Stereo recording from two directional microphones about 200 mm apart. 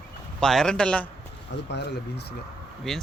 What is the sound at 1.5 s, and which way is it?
Speech, 60° left (ahead or behind).